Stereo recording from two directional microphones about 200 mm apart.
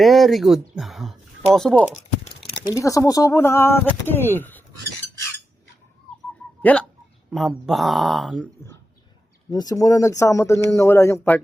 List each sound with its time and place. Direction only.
0.0 s speech: centre (ahead or behind)
2.6 s speech: 15° left (ahead or behind)
6.6 s speech: 10° left (ahead or behind)
9.5 s speech: 20° left (ahead or behind)